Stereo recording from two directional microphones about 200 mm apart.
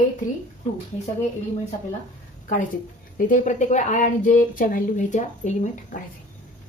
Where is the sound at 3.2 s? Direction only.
40° left (ahead or behind).